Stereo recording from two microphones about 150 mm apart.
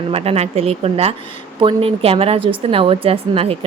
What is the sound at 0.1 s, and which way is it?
A woman's voice, 40° right (ahead or behind).